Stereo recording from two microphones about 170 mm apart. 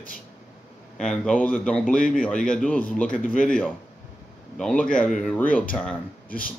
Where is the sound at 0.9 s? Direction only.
5° left (ahead or behind).